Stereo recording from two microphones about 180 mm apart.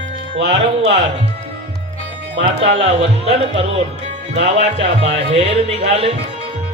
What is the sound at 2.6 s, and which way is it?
Speech, 35° right (ahead or behind).